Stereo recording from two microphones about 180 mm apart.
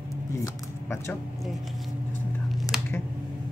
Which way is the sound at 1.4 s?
Centre (ahead or behind).